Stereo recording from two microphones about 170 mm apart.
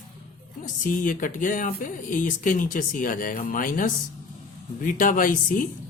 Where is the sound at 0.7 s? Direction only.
50° left (ahead or behind).